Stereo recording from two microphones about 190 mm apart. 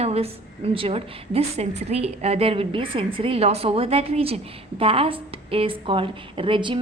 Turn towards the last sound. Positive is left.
turn(degrees=-25)  # may be behind; listen again after turning